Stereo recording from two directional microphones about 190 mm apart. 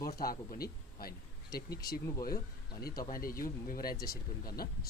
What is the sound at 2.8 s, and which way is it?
Speech, 55° left (ahead or behind).